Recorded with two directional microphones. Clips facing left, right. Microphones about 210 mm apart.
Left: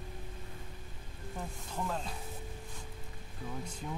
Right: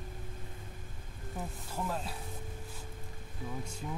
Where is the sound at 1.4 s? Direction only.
5° right (ahead or behind).